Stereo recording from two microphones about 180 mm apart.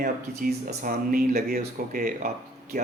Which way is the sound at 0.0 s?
55° right (ahead or behind).